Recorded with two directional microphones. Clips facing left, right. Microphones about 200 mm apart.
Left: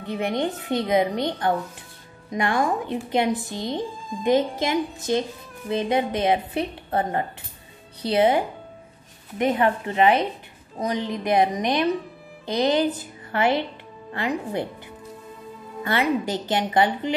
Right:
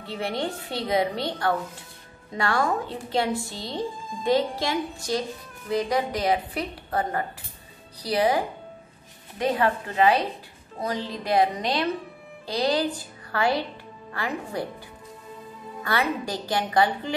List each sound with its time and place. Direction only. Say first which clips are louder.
0.0 s speech: left 4 dB; 20° left (ahead or behind)
9.4 s speech: left 3 dB; 20° left (ahead or behind)
15.8 s speech: left 4 dB; 20° left (ahead or behind)